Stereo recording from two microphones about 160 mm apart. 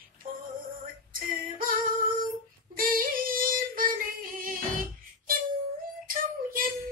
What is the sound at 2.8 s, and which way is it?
Yodeling, 60° right (ahead or behind).